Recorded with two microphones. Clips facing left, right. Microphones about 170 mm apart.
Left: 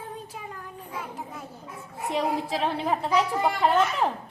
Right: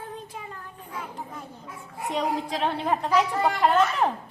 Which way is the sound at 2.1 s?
5° left (ahead or behind).